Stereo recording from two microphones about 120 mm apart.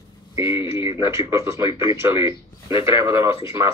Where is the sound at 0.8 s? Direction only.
25° right (ahead or behind).